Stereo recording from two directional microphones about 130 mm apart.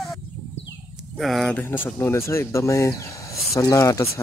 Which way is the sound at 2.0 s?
20° left (ahead or behind).